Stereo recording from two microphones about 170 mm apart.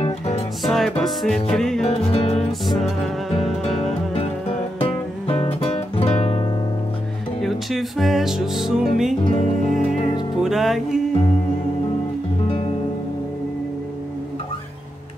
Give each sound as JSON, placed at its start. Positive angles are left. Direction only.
{"t": 0.7, "sound": "music", "side_deg": 0}
{"t": 2.0, "sound": "music", "side_deg": 35}
{"t": 2.3, "sound": "music", "side_deg": 0}
{"t": 4.7, "sound": "music", "side_deg": 35}
{"t": 7.4, "sound": "music", "side_deg": 0}
{"t": 9.3, "sound": "music", "side_deg": 40}
{"t": 10.4, "sound": "music", "side_deg": 0}